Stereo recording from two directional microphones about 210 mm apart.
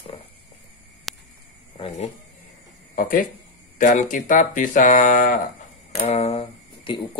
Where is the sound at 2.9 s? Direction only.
40° left (ahead or behind).